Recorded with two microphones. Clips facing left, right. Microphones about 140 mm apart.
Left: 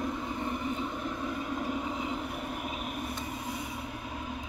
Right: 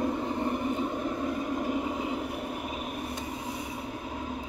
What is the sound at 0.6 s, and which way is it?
Vehicle, 20° right (ahead or behind).